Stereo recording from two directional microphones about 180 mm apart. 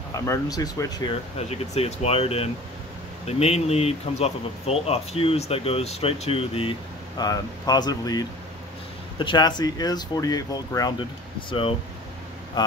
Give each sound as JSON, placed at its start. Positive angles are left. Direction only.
{"t": 0.1, "sound": "speech", "side_deg": 15}
{"t": 1.5, "sound": "speech", "side_deg": 35}